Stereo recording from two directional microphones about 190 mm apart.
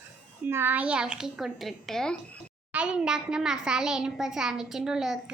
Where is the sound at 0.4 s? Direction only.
10° right (ahead or behind).